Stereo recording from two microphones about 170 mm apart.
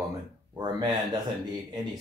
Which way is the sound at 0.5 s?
25° right (ahead or behind).